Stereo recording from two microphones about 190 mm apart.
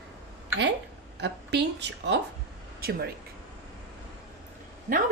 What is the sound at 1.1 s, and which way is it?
A woman's voice, 65° right (ahead or behind).